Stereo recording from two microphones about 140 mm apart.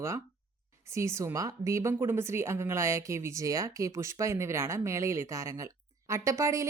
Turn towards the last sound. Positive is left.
turn(degrees=-20)  # may be behind; listen again after turning